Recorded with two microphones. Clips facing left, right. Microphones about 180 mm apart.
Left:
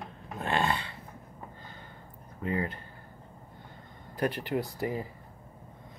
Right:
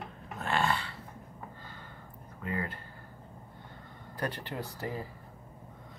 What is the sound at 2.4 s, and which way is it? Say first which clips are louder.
Speech: left 4 dB; 20° left (ahead or behind).